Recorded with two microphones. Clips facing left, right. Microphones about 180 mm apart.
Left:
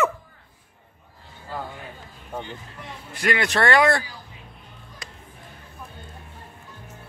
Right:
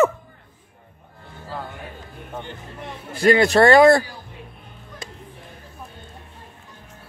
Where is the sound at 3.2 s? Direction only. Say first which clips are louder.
Right 8 dB; 30° right (ahead or behind).